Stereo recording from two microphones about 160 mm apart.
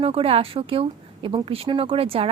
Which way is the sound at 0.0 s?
35° right (ahead or behind).